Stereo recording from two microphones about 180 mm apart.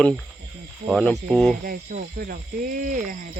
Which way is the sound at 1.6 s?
55° right (ahead or behind).